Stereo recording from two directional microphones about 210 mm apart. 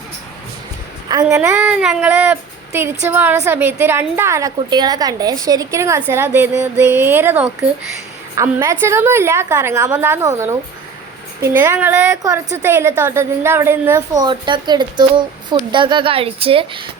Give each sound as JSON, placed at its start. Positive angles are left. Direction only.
{"t": 1.2, "sound": "a woman's voice", "side_deg": -10}